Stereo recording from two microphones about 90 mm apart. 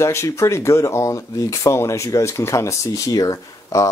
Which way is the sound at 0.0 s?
30° left (ahead or behind).